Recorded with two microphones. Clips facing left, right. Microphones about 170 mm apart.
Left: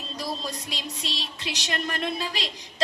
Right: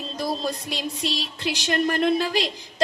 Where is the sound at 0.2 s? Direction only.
55° right (ahead or behind).